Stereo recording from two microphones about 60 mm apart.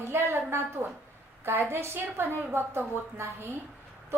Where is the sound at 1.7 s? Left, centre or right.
Right.